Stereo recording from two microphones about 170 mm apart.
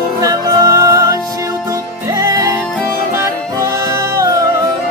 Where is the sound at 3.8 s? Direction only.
15° right (ahead or behind).